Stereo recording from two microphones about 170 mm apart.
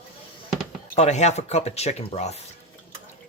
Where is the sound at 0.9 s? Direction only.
40° left (ahead or behind).